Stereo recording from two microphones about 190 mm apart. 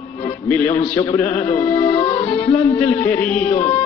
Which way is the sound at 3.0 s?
5° left (ahead or behind).